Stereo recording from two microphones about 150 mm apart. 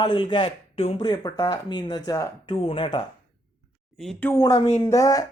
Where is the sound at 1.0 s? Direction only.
30° left (ahead or behind).